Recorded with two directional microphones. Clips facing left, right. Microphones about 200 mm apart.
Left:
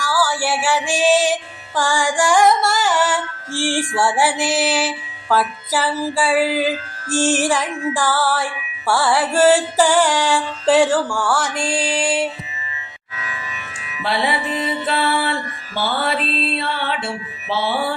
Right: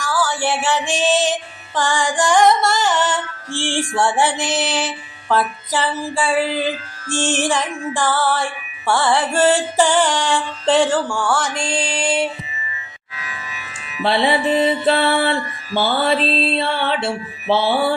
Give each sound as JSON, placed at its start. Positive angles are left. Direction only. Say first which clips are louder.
{"t": 0.0, "sound": "music", "louder": "even", "side_deg": 10}
{"t": 14.0, "sound": "music", "louder": "right 4 dB", "side_deg": -25}